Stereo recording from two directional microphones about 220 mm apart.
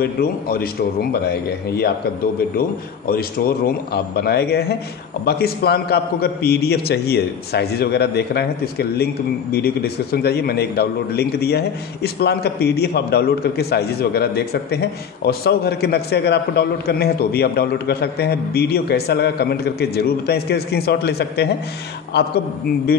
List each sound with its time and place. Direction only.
0.0 s a man's voice: 45° left (ahead or behind)
3.1 s a man's voice: 45° left (ahead or behind)